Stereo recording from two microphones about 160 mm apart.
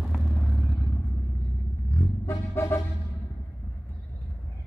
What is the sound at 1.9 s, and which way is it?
Vehicle, 15° left (ahead or behind).